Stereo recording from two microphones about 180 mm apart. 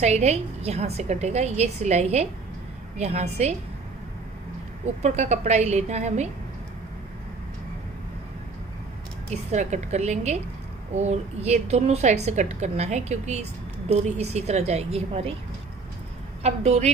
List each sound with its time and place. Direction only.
0.0 s a woman's voice: 35° right (ahead or behind)
5.0 s a woman's voice: 40° right (ahead or behind)
9.3 s a woman's voice: 40° right (ahead or behind)
16.4 s a woman's voice: 35° right (ahead or behind)